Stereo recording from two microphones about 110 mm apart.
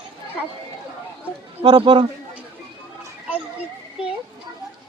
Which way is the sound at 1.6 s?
50° right (ahead or behind).